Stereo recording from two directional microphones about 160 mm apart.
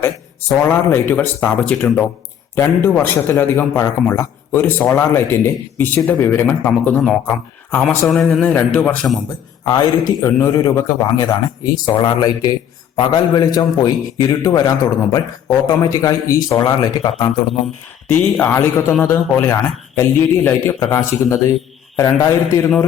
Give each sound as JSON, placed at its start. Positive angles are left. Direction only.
{"t": 0.0, "sound": "a man's voice", "side_deg": 15}
{"t": 9.6, "sound": "a man's voice", "side_deg": 20}
{"t": 18.1, "sound": "a man's voice", "side_deg": 10}